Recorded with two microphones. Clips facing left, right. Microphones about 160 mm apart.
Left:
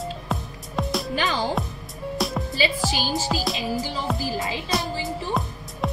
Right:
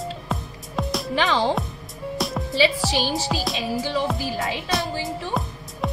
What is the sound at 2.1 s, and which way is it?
Music, centre (ahead or behind).